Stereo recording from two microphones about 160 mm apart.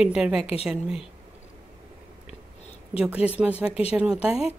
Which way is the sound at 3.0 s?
10° right (ahead or behind).